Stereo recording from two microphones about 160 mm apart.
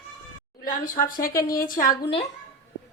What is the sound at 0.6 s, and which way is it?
Speech, 60° left (ahead or behind).